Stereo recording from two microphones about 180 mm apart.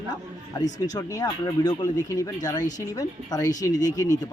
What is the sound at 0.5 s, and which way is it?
A man's voice, 20° left (ahead or behind).